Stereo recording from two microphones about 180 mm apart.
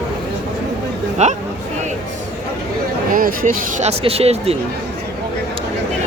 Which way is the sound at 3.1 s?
50° right (ahead or behind).